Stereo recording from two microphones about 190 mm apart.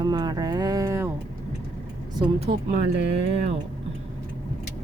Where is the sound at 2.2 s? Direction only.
25° right (ahead or behind).